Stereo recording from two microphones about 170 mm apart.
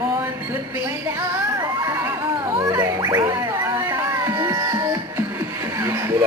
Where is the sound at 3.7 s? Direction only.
20° right (ahead or behind).